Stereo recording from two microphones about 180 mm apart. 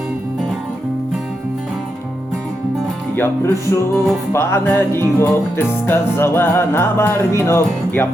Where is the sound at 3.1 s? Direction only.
15° left (ahead or behind).